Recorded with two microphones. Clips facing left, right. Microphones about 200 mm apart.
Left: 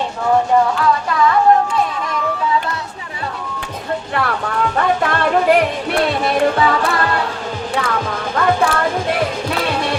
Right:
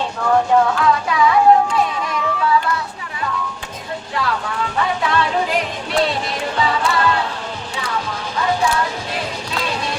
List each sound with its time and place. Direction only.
0.8 s music: centre (ahead or behind)
4.1 s music: 55° left (ahead or behind)